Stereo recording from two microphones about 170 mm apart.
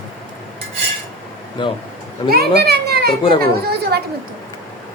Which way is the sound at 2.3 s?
70° right (ahead or behind).